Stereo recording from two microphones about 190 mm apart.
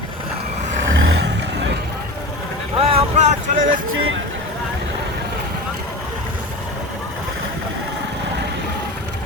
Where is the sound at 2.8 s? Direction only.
35° right (ahead or behind).